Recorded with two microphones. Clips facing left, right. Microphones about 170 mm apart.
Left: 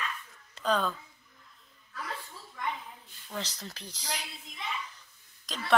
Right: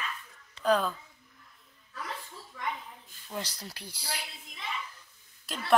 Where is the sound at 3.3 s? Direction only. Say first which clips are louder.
Even; 10° right (ahead or behind).